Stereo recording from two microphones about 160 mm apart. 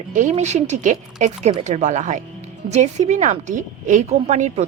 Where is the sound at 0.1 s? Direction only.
50° right (ahead or behind).